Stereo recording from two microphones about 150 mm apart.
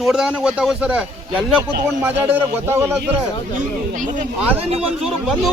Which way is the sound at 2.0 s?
15° right (ahead or behind).